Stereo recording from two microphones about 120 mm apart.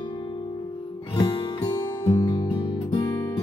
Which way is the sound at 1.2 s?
35° left (ahead or behind).